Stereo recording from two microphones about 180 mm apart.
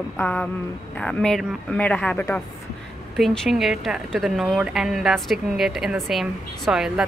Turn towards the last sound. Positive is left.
turn(degrees=-5)  # may be behind; listen again after turning